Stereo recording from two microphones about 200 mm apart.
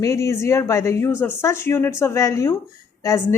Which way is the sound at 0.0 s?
15° left (ahead or behind).